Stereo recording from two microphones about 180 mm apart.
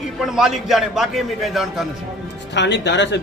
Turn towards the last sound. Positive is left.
turn(degrees=75)  # may be behind; listen again after turning